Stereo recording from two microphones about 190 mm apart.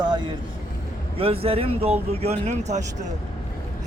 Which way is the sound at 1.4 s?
30° right (ahead or behind).